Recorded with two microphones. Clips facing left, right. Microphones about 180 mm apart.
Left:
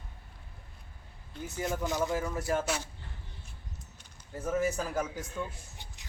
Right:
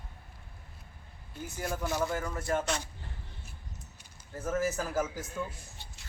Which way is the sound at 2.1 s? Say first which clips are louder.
Left 1 dB; 5° left (ahead or behind).